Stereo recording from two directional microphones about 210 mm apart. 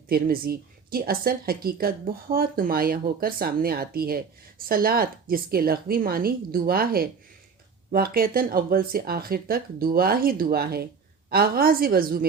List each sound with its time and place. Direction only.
0.1 s speech: 45° right (ahead or behind)